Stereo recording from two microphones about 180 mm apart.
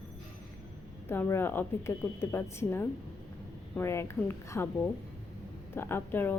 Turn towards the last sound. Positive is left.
turn(degrees=10)  # may be behind; listen again after turning